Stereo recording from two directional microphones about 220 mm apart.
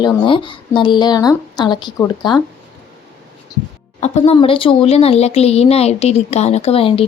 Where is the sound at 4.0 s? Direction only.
30° left (ahead or behind).